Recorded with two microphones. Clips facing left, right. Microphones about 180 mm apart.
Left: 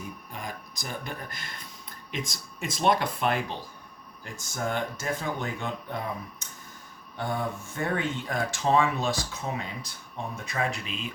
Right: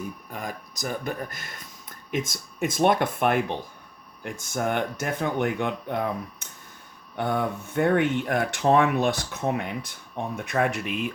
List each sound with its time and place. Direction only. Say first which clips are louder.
0.3 s speech: right 4 dB; 45° right (ahead or behind)